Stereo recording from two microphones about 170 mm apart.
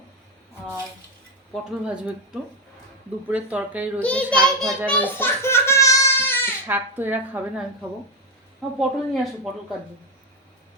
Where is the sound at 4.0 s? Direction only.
10° left (ahead or behind).